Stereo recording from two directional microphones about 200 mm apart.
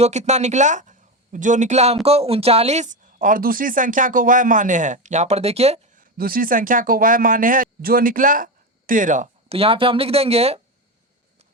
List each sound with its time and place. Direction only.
0.0 s speech: 35° right (ahead or behind)